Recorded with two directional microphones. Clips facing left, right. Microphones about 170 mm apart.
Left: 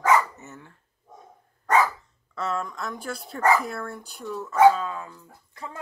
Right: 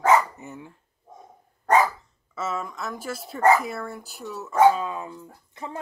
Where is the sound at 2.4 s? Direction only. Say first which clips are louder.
Left 1 dB; 5° right (ahead or behind).